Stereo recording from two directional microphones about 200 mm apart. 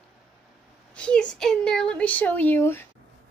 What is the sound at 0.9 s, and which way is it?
Speech, 5° left (ahead or behind).